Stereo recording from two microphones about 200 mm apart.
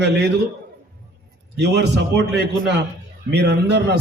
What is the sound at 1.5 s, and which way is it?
A man's voice, 60° right (ahead or behind).